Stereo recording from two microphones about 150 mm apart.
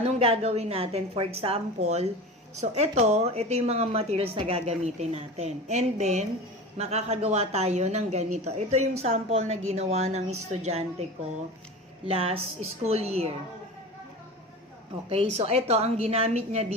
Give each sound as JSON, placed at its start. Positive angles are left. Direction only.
{"t": 0.0, "sound": "a woman's voice", "side_deg": -45}
{"t": 12.0, "sound": "a woman's voice", "side_deg": -40}
{"t": 15.1, "sound": "a woman's voice", "side_deg": -45}